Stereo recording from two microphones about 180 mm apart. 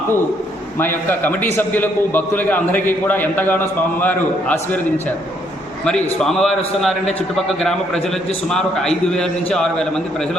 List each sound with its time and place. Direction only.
0.8 s a man's voice: 10° left (ahead or behind)
5.8 s a man's voice: 5° left (ahead or behind)
7.6 s a man's voice: 5° left (ahead or behind)